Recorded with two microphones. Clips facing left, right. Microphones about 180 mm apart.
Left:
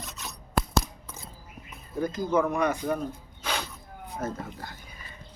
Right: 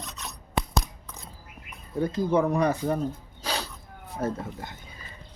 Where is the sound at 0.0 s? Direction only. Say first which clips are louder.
Right 1 dB; centre (ahead or behind).